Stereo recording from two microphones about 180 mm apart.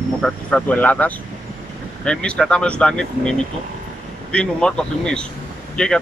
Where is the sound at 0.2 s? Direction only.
5° left (ahead or behind).